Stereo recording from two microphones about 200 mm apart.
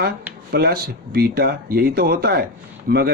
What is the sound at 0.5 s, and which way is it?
A man's voice, 50° right (ahead or behind).